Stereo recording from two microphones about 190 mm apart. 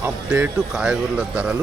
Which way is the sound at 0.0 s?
10° right (ahead or behind).